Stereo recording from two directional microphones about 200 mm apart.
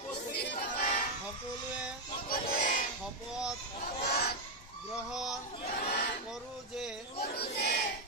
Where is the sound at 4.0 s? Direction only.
50° left (ahead or behind).